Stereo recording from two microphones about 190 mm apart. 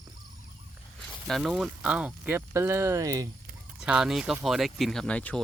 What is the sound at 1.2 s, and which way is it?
Speech, centre (ahead or behind).